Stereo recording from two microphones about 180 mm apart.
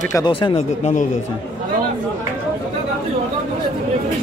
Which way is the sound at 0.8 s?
40° left (ahead or behind).